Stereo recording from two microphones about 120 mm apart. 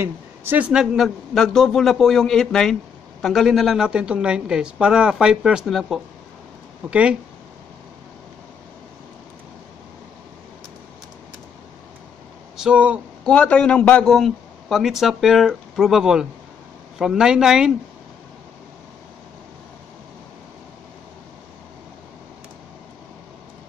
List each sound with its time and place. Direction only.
0.0 s a man's voice: 20° right (ahead or behind)
12.5 s speech: 10° right (ahead or behind)
13.2 s a man's voice: 10° left (ahead or behind)